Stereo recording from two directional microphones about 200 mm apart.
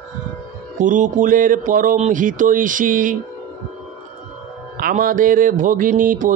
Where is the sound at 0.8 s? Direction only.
40° right (ahead or behind).